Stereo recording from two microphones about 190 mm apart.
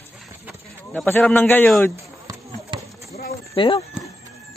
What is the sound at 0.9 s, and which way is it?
A man's voice, 10° left (ahead or behind).